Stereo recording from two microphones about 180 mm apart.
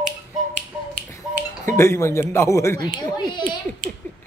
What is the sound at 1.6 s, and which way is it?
Speech, 15° left (ahead or behind).